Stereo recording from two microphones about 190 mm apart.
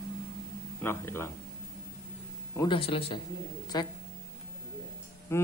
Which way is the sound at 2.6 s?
25° left (ahead or behind).